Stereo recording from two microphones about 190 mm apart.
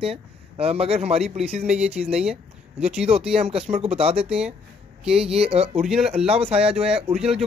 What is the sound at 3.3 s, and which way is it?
Speech, 30° right (ahead or behind).